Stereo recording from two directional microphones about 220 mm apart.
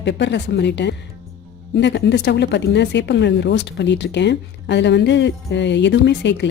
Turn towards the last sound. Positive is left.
turn(degrees=50)  # may be behind; listen again after turning